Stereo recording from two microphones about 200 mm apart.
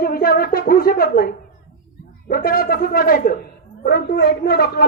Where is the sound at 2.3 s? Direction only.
50° left (ahead or behind).